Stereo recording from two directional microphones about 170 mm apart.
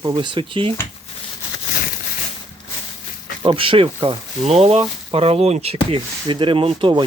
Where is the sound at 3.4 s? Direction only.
30° right (ahead or behind).